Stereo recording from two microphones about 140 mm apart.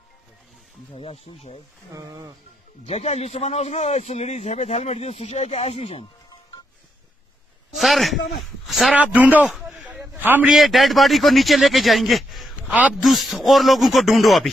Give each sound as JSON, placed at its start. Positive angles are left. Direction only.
{"t": 0.9, "sound": "a man's voice", "side_deg": 45}
{"t": 2.0, "sound": "speech", "side_deg": -25}
{"t": 2.9, "sound": "a man's voice", "side_deg": 50}
{"t": 7.7, "sound": "speech", "side_deg": 0}
{"t": 8.9, "sound": "speech", "side_deg": -10}
{"t": 9.7, "sound": "a sound", "side_deg": -5}
{"t": 10.5, "sound": "a man's voice", "side_deg": 0}
{"t": 12.6, "sound": "a man's voice", "side_deg": -10}
{"t": 12.9, "sound": "a man's voice", "side_deg": 0}